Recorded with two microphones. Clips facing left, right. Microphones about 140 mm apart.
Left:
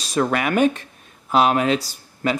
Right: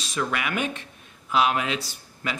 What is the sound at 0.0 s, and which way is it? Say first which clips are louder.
Speech: left 7 dB; 40° left (ahead or behind).